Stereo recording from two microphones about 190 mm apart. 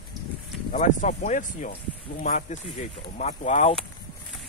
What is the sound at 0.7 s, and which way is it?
Speech, 40° left (ahead or behind).